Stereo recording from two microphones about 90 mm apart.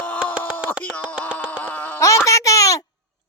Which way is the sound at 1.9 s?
35° left (ahead or behind).